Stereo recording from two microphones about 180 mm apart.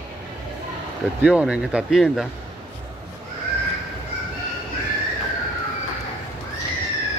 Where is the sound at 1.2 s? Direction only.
5° right (ahead or behind).